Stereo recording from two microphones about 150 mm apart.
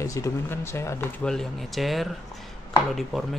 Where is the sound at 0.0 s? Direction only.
20° left (ahead or behind).